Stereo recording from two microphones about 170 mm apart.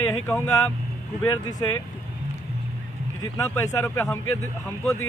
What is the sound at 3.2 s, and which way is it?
Speech, 20° left (ahead or behind).